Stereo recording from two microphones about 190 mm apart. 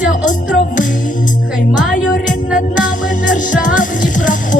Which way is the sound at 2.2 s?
45° left (ahead or behind).